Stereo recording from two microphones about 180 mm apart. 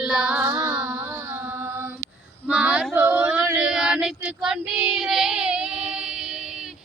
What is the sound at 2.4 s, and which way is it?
Female singing, 5° right (ahead or behind).